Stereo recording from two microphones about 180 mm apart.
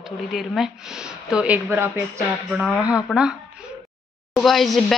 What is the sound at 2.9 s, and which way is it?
Speech, 5° right (ahead or behind).